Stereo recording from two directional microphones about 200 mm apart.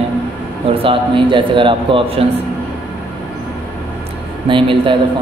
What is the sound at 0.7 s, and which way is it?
Speech, 25° right (ahead or behind).